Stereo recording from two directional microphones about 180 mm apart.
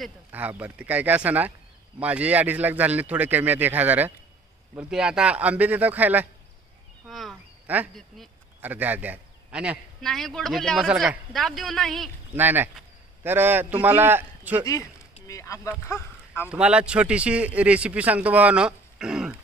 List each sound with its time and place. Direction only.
0.3 s a man's voice: 10° right (ahead or behind)
7.1 s a sound: centre (ahead or behind)
8.5 s a man's voice: 10° right (ahead or behind)
12.4 s a man's voice: 10° right (ahead or behind)
15.2 s speech: 15° left (ahead or behind)
16.4 s a man's voice: 5° right (ahead or behind)